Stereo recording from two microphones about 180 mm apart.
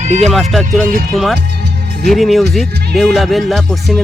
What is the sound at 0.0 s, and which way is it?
Speech, 40° right (ahead or behind).